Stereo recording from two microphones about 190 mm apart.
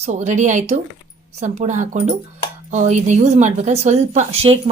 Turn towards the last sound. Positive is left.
turn(degrees=-30)  # may be behind; listen again after turning